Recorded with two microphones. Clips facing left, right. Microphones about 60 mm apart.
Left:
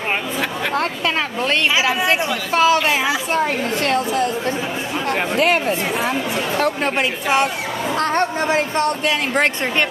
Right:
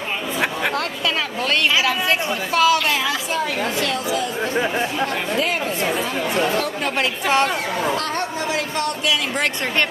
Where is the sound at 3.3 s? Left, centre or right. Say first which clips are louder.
Left 3 dB; left.